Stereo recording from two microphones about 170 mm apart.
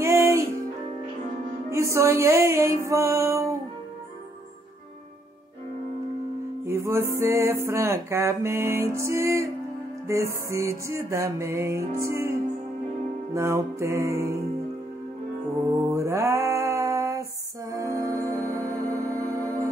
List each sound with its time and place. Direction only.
0.0 s music: 15° right (ahead or behind)
1.7 s music: 15° right (ahead or behind)
6.6 s music: 15° right (ahead or behind)
15.7 s music: 15° right (ahead or behind)